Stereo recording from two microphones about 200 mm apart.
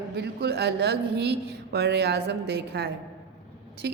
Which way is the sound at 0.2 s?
55° right (ahead or behind).